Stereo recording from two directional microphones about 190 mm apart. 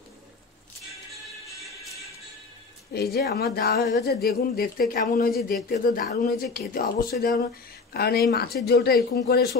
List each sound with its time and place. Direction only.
2.9 s a man's voice: 55° left (ahead or behind)